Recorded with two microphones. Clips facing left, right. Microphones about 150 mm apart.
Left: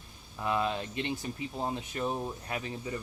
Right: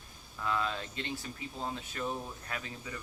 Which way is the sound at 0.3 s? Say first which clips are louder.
Left 4 dB; 20° left (ahead or behind).